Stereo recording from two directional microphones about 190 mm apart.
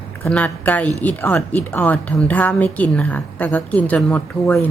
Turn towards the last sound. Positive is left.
turn(degrees=10)  # may be behind; listen again after turning